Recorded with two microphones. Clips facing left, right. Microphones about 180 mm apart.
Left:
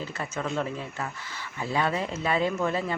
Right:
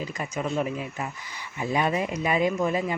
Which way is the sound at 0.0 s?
15° right (ahead or behind).